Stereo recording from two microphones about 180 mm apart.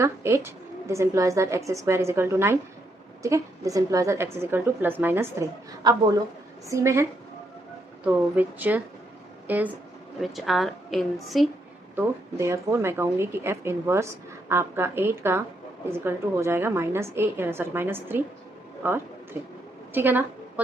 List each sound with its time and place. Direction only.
0.0 s a woman's voice: 15° right (ahead or behind)
11.9 s a woman's voice: 15° right (ahead or behind)
18.8 s a sound: 10° right (ahead or behind)
19.9 s a woman's voice: 10° right (ahead or behind)